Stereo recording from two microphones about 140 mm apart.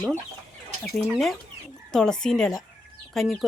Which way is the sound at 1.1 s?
Centre (ahead or behind).